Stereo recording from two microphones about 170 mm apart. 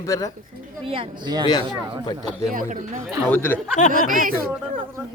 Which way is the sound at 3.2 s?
10° left (ahead or behind).